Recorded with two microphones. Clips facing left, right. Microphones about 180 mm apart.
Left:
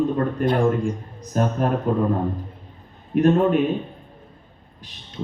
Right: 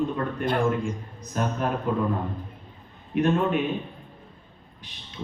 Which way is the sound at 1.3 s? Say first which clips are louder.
Left 5 dB; 40° left (ahead or behind).